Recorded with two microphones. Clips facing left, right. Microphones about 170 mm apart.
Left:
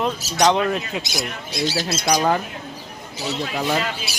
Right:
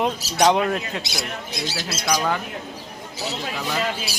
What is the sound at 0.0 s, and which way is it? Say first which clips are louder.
Speech: even; 10° right (ahead or behind).